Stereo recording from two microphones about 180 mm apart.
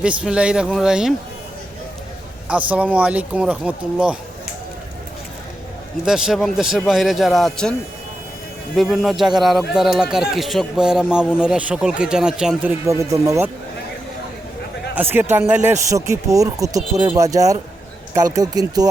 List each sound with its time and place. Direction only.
0.0 s speech: 5° right (ahead or behind)
2.5 s speech: 5° right (ahead or behind)
6.1 s speech: 5° right (ahead or behind)
12.8 s speech: 15° right (ahead or behind)
14.9 s speech: 10° right (ahead or behind)